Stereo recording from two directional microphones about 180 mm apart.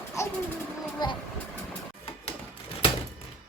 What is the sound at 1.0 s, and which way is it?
Speech, 25° left (ahead or behind).